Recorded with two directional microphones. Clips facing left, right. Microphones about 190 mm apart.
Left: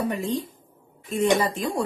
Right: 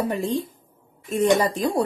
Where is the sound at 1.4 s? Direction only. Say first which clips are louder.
Right 3 dB; 35° right (ahead or behind).